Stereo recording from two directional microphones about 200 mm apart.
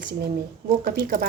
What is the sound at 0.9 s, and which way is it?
Speech, 45° right (ahead or behind).